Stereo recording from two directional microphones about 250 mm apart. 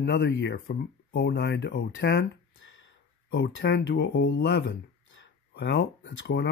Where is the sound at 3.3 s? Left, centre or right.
Left.